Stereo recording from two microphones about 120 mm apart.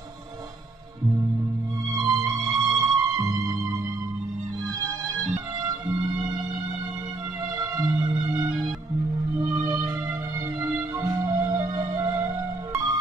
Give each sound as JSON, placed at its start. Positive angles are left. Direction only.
{"t": 1.9, "sound": "music", "side_deg": -30}